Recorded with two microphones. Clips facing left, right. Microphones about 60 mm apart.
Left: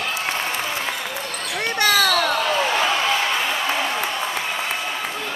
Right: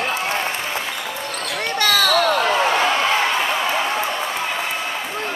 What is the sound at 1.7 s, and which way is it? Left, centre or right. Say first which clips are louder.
Basketball bounce: even; centre.